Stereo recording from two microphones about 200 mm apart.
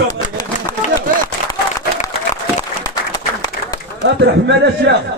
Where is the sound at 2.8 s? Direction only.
20° left (ahead or behind).